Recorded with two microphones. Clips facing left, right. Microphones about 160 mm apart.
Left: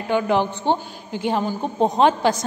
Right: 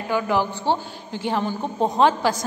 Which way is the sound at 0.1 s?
20° left (ahead or behind).